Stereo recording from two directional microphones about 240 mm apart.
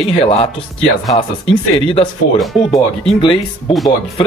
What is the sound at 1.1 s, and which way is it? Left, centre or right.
Speech, left.